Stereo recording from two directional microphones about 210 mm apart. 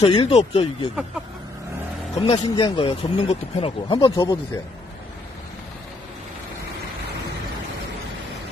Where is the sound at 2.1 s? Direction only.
25° left (ahead or behind).